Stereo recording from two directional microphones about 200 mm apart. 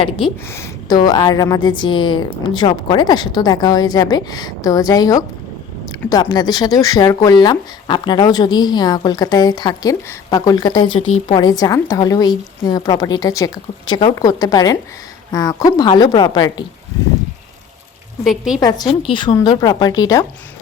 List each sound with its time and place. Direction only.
0.5 s speech: 15° left (ahead or behind)
18.3 s a woman's voice: 5° right (ahead or behind)
18.6 s speech: 20° left (ahead or behind)